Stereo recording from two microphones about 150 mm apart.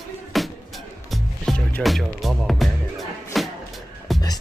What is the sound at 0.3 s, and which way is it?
Music, centre (ahead or behind).